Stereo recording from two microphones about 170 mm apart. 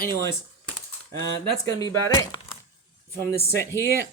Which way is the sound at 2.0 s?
25° left (ahead or behind).